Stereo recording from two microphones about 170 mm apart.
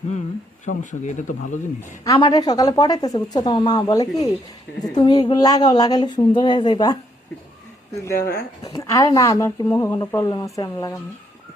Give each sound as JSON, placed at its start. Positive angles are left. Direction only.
{"t": 0.6, "sound": "speech", "side_deg": 50}
{"t": 2.1, "sound": "speech", "side_deg": 25}
{"t": 8.0, "sound": "speech", "side_deg": 15}